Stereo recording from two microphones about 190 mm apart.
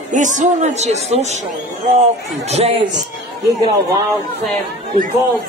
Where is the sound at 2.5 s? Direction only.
30° right (ahead or behind).